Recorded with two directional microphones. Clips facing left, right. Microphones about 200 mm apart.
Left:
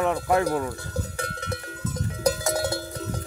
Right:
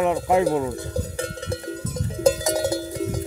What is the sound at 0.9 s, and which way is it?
Cowbell, 30° right (ahead or behind).